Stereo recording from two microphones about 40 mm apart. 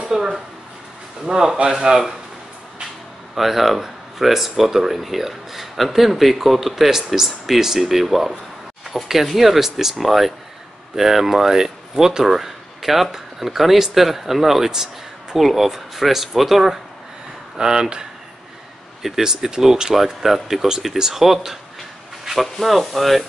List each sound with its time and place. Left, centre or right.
0.1 s speech: centre
3.3 s speech: centre
17.6 s speech: centre
19.0 s speech: centre